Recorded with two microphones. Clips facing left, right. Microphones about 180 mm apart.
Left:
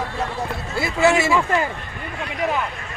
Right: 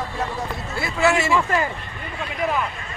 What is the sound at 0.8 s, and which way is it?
Speech, 20° left (ahead or behind).